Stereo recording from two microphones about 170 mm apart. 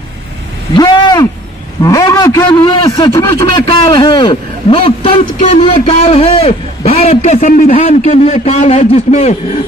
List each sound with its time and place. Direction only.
0.7 s a man's voice: 25° left (ahead or behind)